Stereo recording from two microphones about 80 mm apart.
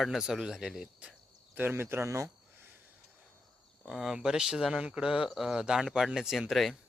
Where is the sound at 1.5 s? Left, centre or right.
Right.